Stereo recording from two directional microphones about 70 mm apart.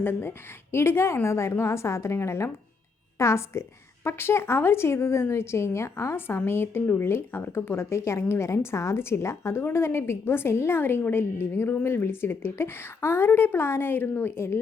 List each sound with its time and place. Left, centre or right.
0.0 s a woman's voice: left
6.8 s speech: left
7.1 s a woman's voice: left